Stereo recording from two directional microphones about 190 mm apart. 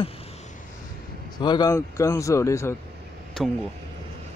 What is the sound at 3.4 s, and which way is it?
Speech, centre (ahead or behind).